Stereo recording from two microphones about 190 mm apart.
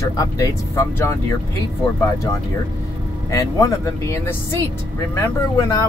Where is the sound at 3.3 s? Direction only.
15° left (ahead or behind).